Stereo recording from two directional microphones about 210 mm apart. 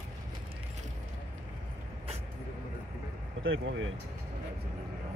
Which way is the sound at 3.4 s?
70° right (ahead or behind).